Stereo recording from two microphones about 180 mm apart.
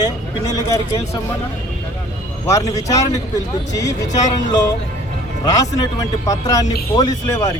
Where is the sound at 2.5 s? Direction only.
15° left (ahead or behind).